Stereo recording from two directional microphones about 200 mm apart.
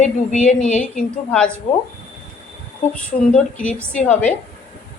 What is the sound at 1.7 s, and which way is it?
Speech, 30° left (ahead or behind).